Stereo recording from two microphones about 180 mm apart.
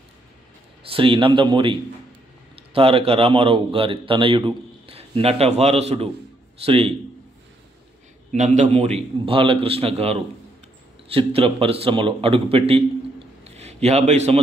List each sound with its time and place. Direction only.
0.8 s a man's voice: 30° right (ahead or behind)
8.3 s speech: 40° right (ahead or behind)
11.1 s speech: 30° right (ahead or behind)
13.4 s a sound: 35° right (ahead or behind)